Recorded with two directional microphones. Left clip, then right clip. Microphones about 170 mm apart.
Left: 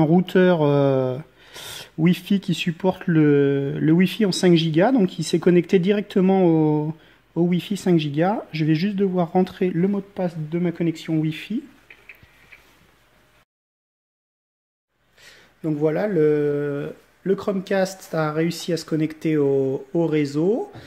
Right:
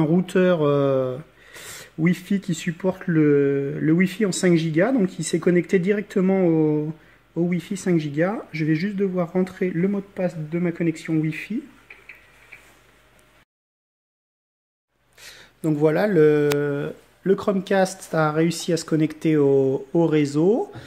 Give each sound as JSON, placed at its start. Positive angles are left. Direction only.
{"t": 0.0, "sound": "speech", "side_deg": 45}
{"t": 15.3, "sound": "speech", "side_deg": -5}